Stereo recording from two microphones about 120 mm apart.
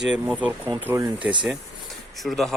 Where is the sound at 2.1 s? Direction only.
Centre (ahead or behind).